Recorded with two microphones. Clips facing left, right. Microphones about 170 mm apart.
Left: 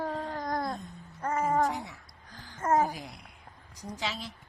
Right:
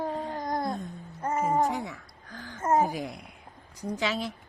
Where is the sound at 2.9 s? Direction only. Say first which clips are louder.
Right 9 dB; 55° right (ahead or behind).